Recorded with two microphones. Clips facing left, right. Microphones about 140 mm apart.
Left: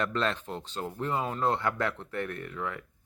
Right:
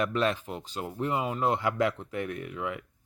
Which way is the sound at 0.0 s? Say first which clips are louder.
Right 2 dB; 10° right (ahead or behind).